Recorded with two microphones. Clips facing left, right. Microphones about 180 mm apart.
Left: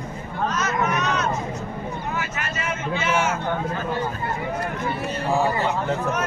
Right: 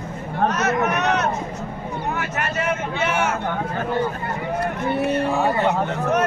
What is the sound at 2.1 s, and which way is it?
Vehicle, 60° right (ahead or behind).